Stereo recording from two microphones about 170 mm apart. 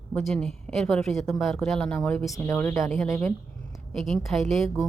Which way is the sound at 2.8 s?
Centre (ahead or behind).